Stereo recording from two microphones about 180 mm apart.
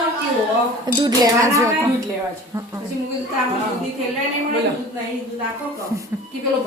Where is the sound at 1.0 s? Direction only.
15° right (ahead or behind).